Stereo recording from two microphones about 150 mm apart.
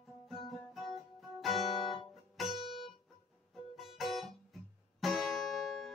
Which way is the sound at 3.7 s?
Centre (ahead or behind).